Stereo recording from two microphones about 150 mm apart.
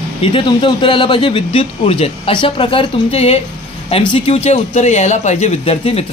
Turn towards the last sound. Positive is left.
turn(degrees=40)  # may be behind; listen again after turning